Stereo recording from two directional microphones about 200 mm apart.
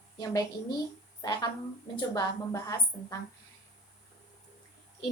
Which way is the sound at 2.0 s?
20° left (ahead or behind).